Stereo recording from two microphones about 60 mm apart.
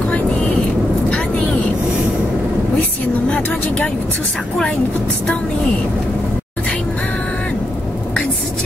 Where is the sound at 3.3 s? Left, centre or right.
Centre.